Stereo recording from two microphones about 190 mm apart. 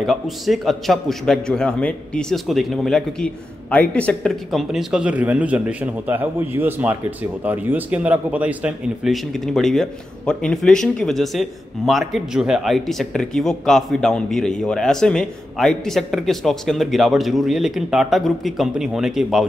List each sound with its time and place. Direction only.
0.0 s speech: centre (ahead or behind)